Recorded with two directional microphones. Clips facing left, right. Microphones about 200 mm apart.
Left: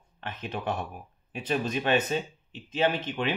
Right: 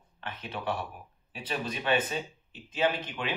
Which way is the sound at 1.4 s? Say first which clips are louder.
Left 5 dB; 45° left (ahead or behind).